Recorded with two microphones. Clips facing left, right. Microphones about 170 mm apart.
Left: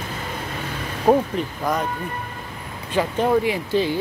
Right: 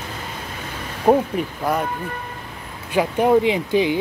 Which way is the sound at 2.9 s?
10° right (ahead or behind).